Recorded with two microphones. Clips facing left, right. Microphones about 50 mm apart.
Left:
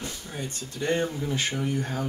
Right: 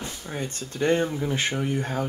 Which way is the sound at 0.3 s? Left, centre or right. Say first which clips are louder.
Right 3 dB; right.